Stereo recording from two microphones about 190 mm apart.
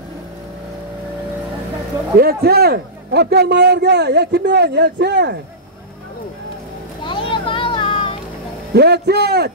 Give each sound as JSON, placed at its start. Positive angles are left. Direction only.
{"t": 2.1, "sound": "a man's voice", "side_deg": -55}
{"t": 7.1, "sound": "a sound", "side_deg": 25}
{"t": 8.7, "sound": "a man's voice", "side_deg": -60}